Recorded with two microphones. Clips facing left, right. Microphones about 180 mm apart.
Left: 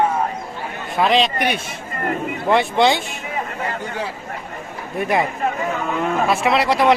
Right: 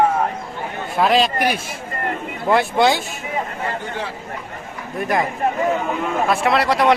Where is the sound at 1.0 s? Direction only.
Centre (ahead or behind).